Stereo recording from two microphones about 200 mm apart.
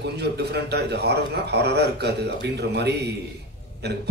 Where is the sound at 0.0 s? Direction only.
55° right (ahead or behind).